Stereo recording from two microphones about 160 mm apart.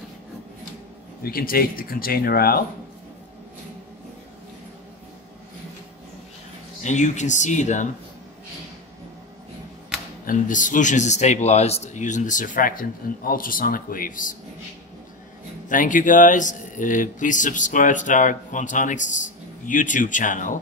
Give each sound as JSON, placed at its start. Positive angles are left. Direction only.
{"t": 1.2, "sound": "speech", "side_deg": 65}
{"t": 6.8, "sound": "speech", "side_deg": 45}
{"t": 10.2, "sound": "speech", "side_deg": 55}
{"t": 15.7, "sound": "speech", "side_deg": 55}